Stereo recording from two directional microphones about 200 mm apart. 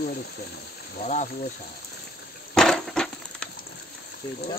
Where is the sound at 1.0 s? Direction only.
35° left (ahead or behind).